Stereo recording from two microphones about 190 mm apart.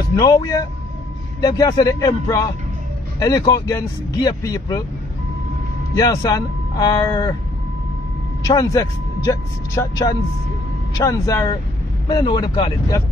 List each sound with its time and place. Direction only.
0.1 s speech: 20° left (ahead or behind)
5.9 s speech: 20° left (ahead or behind)
8.5 s speech: 20° left (ahead or behind)